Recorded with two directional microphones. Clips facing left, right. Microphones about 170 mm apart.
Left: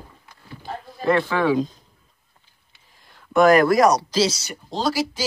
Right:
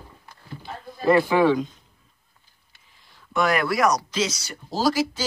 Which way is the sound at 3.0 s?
50° left (ahead or behind).